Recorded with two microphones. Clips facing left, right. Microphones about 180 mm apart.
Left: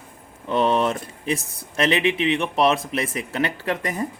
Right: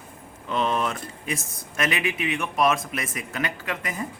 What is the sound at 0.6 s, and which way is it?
Speech, 30° left (ahead or behind).